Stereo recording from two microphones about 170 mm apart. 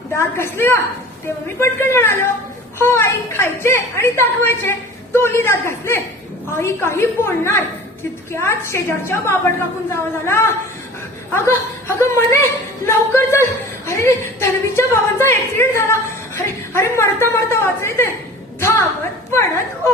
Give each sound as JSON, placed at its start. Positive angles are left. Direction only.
{"t": 0.1, "sound": "speech", "side_deg": 15}